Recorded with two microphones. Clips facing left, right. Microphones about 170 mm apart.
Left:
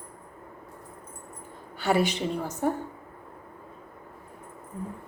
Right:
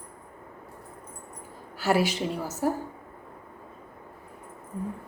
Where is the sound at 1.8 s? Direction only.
5° right (ahead or behind).